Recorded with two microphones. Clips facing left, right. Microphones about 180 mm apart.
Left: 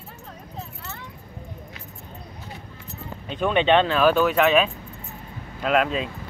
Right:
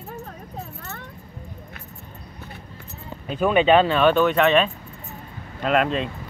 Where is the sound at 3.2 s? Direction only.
5° right (ahead or behind).